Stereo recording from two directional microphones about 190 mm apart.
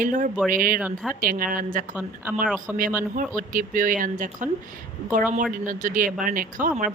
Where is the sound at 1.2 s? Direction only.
45° right (ahead or behind).